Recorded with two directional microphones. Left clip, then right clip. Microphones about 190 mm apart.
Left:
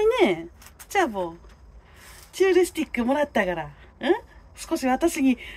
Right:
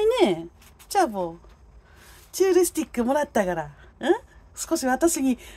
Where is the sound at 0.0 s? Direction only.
40° right (ahead or behind).